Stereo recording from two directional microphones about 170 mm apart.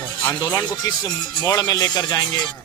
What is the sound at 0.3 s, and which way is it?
Speech, 25° left (ahead or behind).